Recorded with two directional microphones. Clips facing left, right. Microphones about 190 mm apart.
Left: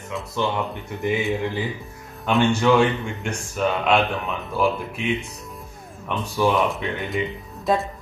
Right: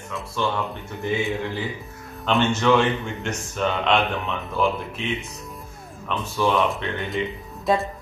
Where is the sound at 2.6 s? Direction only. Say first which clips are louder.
Left 1 dB; 10° left (ahead or behind).